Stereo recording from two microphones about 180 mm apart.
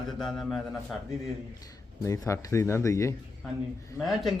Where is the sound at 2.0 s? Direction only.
15° left (ahead or behind).